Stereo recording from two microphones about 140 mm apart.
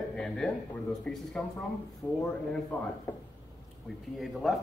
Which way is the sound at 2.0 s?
25° left (ahead or behind).